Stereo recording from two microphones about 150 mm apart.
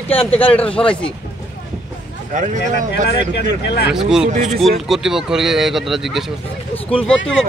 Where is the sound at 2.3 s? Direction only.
55° right (ahead or behind).